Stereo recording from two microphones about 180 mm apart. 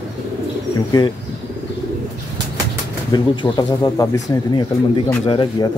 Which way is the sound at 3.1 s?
25° left (ahead or behind).